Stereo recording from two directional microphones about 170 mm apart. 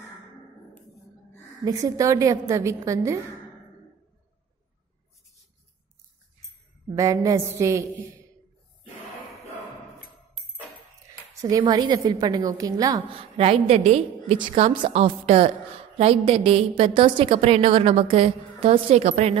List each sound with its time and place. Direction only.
1.6 s a woman's voice: 20° right (ahead or behind)
7.0 s a woman's voice: 20° right (ahead or behind)
11.4 s a woman's voice: 20° right (ahead or behind)
13.4 s a woman's voice: 35° right (ahead or behind)